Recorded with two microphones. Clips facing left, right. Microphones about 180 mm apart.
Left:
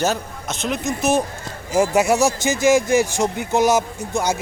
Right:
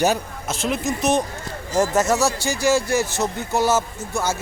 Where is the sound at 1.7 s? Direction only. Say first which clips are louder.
Left 2 dB; 10° left (ahead or behind).